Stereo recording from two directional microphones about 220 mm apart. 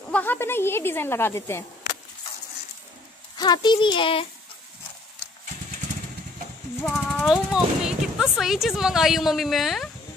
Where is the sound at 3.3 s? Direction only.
20° left (ahead or behind).